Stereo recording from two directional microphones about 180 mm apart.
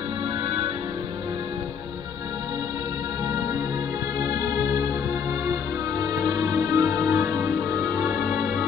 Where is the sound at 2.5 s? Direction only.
20° right (ahead or behind); by 8.6 s 5° right (ahead or behind).